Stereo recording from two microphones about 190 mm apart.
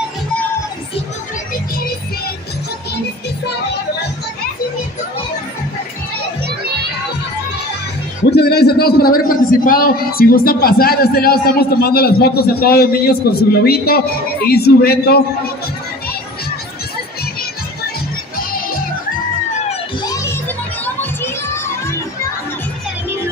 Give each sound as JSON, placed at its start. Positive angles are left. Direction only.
{"t": 8.3, "sound": "a man's voice", "side_deg": 60}
{"t": 20.8, "sound": "children playing", "side_deg": 10}